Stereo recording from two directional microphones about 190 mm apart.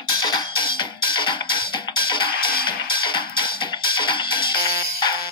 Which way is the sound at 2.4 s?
50° left (ahead or behind).